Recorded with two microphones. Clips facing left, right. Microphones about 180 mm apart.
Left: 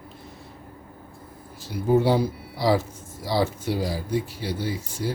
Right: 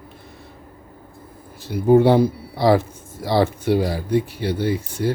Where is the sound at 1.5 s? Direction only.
60° right (ahead or behind).